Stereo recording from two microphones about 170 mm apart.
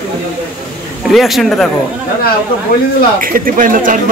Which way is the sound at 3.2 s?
55° right (ahead or behind).